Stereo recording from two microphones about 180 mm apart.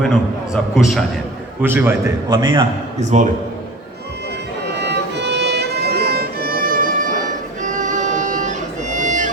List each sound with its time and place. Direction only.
0.0 s a man's voice: centre (ahead or behind)
1.6 s a man's voice: 10° right (ahead or behind)
2.3 s a man's voice: 20° right (ahead or behind)
3.0 s speech: 40° right (ahead or behind)
4.8 s music: 70° right (ahead or behind); by 9.3 s 45° right (ahead or behind)